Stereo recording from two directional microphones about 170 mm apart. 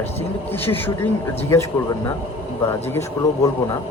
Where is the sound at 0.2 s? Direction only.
10° left (ahead or behind).